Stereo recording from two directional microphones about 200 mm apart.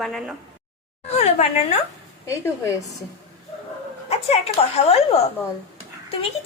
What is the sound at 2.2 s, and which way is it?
Speech, 15° left (ahead or behind).